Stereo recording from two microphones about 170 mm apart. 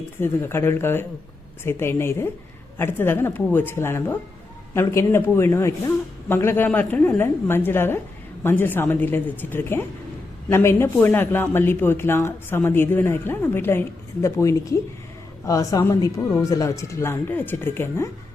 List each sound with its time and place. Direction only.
0.2 s speech: 15° left (ahead or behind)